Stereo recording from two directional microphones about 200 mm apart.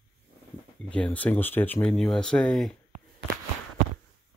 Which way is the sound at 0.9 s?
5° left (ahead or behind).